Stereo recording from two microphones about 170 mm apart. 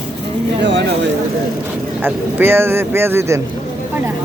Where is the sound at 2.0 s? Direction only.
10° right (ahead or behind).